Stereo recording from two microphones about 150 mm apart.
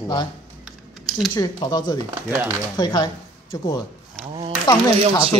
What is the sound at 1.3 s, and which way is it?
Speech, 25° left (ahead or behind).